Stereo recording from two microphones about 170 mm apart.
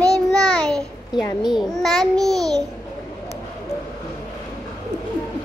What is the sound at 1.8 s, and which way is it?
Speech, centre (ahead or behind).